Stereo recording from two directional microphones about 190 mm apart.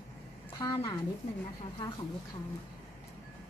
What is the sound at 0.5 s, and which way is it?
Speech, 15° left (ahead or behind).